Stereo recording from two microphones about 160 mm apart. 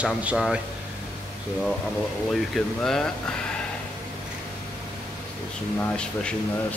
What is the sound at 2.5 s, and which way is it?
Speech, 5° left (ahead or behind).